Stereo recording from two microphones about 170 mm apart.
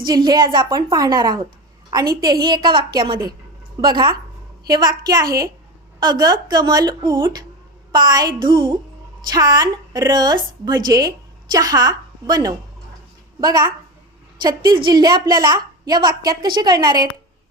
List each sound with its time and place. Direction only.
0.0 s a woman's voice: 25° right (ahead or behind)